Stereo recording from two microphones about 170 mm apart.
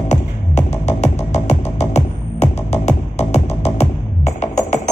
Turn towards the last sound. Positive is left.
turn(degrees=40)  # may be behind; listen again after turning